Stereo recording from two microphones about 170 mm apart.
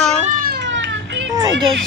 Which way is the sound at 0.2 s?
55° right (ahead or behind).